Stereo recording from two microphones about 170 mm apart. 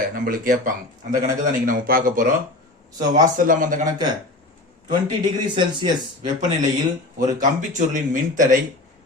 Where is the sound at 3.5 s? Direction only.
50° right (ahead or behind).